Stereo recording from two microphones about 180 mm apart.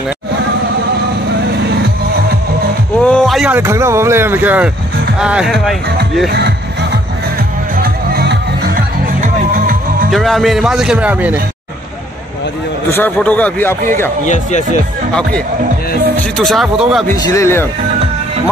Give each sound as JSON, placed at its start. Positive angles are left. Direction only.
{"t": 3.0, "sound": "a man's voice", "side_deg": 5}
{"t": 6.3, "sound": "music", "side_deg": -70}
{"t": 7.7, "sound": "music", "side_deg": -55}
{"t": 9.2, "sound": "music", "side_deg": -50}
{"t": 10.1, "sound": "a man's voice", "side_deg": 0}
{"t": 12.9, "sound": "a man's voice", "side_deg": 10}
{"t": 14.2, "sound": "speech", "side_deg": 40}
{"t": 16.3, "sound": "a man's voice", "side_deg": 0}
{"t": 17.3, "sound": "a man's voice", "side_deg": 15}